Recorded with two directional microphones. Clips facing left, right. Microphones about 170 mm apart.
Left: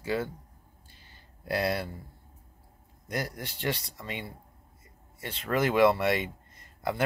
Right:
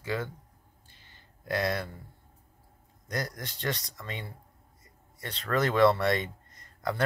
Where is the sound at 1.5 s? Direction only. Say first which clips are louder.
Left 1 dB; 35° left (ahead or behind).